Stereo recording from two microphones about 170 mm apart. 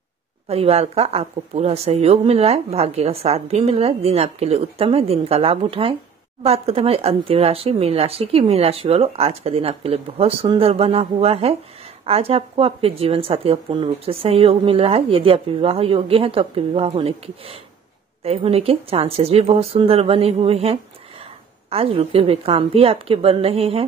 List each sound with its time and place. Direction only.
0.5 s a woman's voice: 35° right (ahead or behind)